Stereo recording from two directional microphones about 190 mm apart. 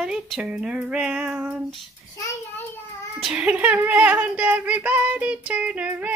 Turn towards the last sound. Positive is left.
turn(degrees=-5)  # may be behind; listen again after turning